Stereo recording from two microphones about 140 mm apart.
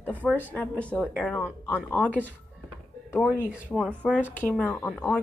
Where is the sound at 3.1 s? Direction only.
10° left (ahead or behind).